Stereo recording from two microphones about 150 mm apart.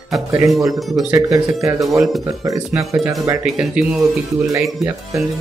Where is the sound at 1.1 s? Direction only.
20° right (ahead or behind).